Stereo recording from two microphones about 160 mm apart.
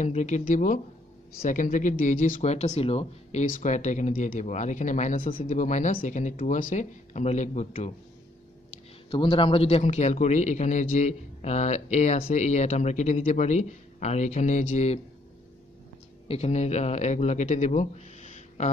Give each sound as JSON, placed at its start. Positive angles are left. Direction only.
{"t": 0.0, "sound": "a man's voice", "side_deg": 50}
{"t": 5.4, "sound": "a man's voice", "side_deg": 50}
{"t": 9.1, "sound": "a man's voice", "side_deg": 35}
{"t": 16.3, "sound": "speech", "side_deg": 40}